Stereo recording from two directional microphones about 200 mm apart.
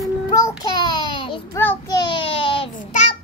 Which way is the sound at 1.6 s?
15° left (ahead or behind).